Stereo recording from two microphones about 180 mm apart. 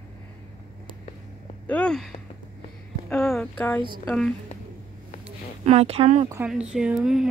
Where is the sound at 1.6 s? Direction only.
5° left (ahead or behind).